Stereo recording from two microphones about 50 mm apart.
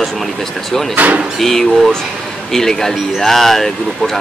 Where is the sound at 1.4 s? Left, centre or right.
Centre.